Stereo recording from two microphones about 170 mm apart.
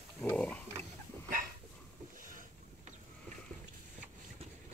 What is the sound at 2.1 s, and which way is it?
Boat, 50° right (ahead or behind).